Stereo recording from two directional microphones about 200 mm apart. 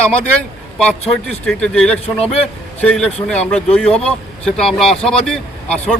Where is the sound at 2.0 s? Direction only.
30° left (ahead or behind).